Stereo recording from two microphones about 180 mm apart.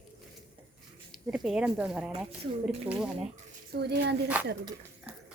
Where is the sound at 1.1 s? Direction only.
Centre (ahead or behind).